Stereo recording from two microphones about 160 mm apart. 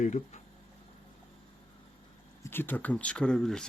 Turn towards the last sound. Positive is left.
turn(degrees=5)  # may be behind; listen again after turning